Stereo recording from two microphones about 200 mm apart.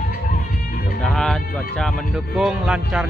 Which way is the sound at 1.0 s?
Centre (ahead or behind).